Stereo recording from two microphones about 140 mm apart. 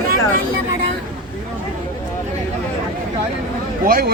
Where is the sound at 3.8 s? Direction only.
90° right.